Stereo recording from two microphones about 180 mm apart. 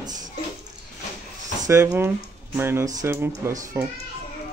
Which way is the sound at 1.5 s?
15° right (ahead or behind).